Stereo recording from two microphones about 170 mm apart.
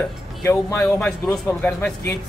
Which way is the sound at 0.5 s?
15° left (ahead or behind).